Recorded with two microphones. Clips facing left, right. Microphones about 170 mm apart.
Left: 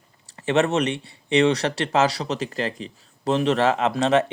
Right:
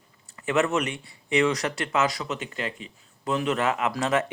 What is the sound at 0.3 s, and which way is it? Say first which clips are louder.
Speech: left 4 dB; 30° left (ahead or behind).